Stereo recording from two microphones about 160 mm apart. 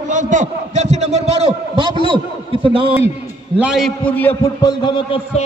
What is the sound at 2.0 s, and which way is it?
Speech, 35° right (ahead or behind).